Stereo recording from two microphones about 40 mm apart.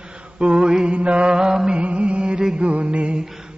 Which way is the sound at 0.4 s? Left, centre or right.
Right.